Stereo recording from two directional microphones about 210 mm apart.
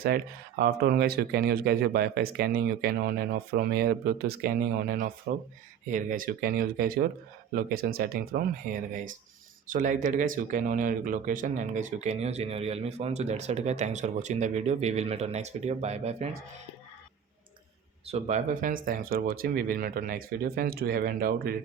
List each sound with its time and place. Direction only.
0.6 s speech: 45° right (ahead or behind); by 16.3 s 30° right (ahead or behind)
18.0 s speech: 30° right (ahead or behind)